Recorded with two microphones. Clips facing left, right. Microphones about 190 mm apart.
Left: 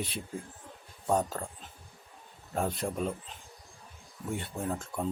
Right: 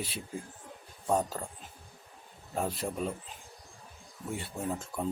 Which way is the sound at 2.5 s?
5° right (ahead or behind).